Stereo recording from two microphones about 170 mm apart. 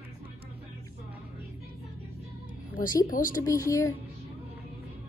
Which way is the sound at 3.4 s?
20° left (ahead or behind).